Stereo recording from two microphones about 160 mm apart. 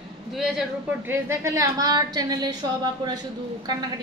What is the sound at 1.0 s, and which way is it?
A woman's voice, 20° right (ahead or behind).